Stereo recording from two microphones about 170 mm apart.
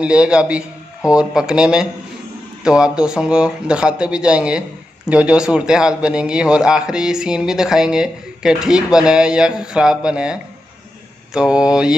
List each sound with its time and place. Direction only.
0.0 s speech: 5° right (ahead or behind)